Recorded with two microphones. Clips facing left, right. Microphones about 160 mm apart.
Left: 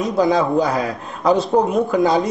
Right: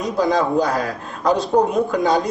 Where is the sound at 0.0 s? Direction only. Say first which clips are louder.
Left 2 dB; centre (ahead or behind).